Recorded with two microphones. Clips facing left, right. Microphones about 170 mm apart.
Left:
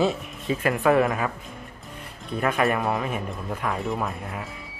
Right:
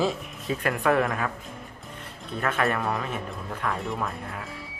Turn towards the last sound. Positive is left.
turn(degrees=0)  # may be behind; listen again after turning